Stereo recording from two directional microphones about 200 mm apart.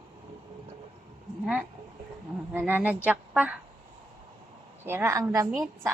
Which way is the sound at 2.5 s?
10° right (ahead or behind).